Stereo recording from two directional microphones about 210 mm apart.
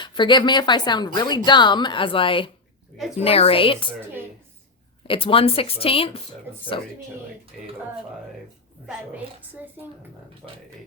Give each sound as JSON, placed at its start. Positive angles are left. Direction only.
{"t": 0.0, "sound": "a woman's voice", "side_deg": 20}
{"t": 5.0, "sound": "a woman's voice", "side_deg": 25}
{"t": 7.5, "sound": "speech", "side_deg": 0}
{"t": 8.9, "sound": "a woman's voice", "side_deg": -10}